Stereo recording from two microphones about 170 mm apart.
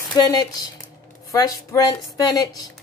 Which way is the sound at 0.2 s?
20° left (ahead or behind).